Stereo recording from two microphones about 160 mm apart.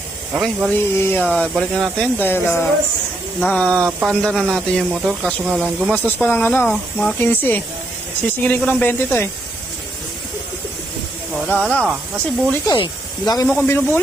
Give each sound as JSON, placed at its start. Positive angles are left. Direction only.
{"t": 0.3, "sound": "speech", "side_deg": -5}
{"t": 0.7, "sound": "speech", "side_deg": 15}
{"t": 2.1, "sound": "speech", "side_deg": 10}
{"t": 5.9, "sound": "speech", "side_deg": 10}
{"t": 11.4, "sound": "speech", "side_deg": 10}
{"t": 12.6, "sound": "speech", "side_deg": 30}